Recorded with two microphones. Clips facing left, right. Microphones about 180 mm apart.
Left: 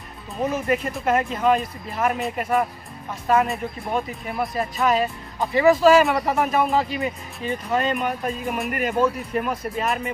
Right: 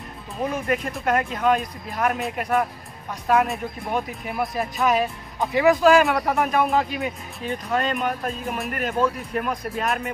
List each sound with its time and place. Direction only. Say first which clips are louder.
0.4 s speech: left 2 dB; centre (ahead or behind)